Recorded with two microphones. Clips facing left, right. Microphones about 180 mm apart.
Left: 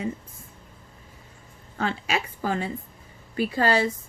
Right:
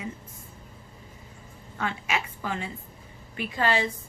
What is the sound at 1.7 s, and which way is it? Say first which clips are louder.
A woman's voice: left 3 dB; 35° left (ahead or behind).